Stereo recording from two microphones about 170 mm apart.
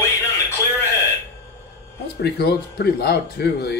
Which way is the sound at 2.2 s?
65° left (ahead or behind).